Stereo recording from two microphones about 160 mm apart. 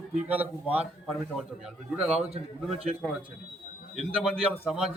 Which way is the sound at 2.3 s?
40° right (ahead or behind).